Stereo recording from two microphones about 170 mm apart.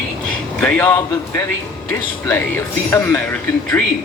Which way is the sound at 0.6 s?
10° left (ahead or behind).